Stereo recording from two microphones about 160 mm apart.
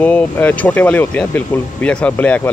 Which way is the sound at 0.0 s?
10° left (ahead or behind).